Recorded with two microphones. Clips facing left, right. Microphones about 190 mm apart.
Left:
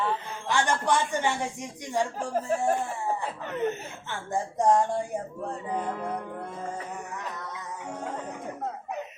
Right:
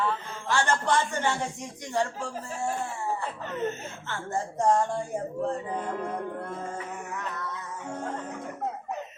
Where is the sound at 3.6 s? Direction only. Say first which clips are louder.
Left 3 dB; 15° left (ahead or behind).